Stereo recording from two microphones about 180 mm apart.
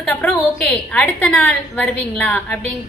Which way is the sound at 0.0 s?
5° left (ahead or behind).